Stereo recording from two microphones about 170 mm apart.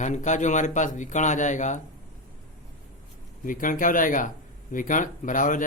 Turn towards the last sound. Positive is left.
turn(degrees=50)  # may be behind; listen again after turning